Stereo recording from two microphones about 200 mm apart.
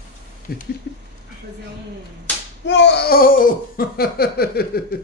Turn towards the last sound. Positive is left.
turn(degrees=50)  # may be behind; listen again after turning